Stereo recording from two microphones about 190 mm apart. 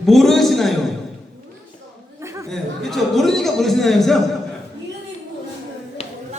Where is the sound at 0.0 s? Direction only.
Centre (ahead or behind).